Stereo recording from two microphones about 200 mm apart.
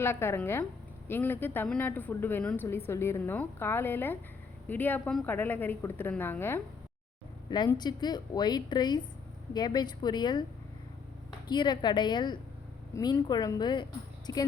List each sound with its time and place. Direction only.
0.0 s a woman's voice: 10° left (ahead or behind)